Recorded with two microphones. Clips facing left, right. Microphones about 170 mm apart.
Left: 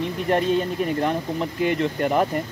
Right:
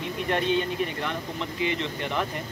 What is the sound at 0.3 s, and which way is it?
Speech, 40° left (ahead or behind).